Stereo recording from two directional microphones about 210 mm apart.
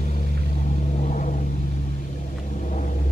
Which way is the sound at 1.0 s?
35° left (ahead or behind).